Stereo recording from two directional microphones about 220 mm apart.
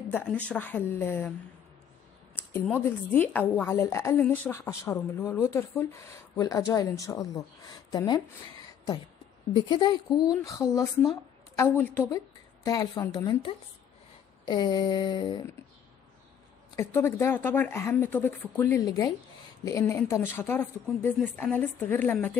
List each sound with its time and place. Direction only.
0.1 s a woman's voice: 5° left (ahead or behind)
2.5 s a woman's voice: 10° left (ahead or behind)
9.5 s a sound: 20° left (ahead or behind)
10.3 s a woman's voice: 15° left (ahead or behind)
14.4 s a sound: 20° left (ahead or behind)
16.7 s a woman's voice: 10° left (ahead or behind)